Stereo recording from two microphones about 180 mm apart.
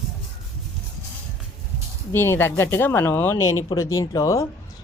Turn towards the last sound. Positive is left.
turn(degrees=15)  # may be behind; listen again after turning